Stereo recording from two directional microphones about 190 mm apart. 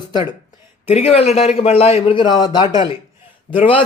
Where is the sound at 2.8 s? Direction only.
30° left (ahead or behind).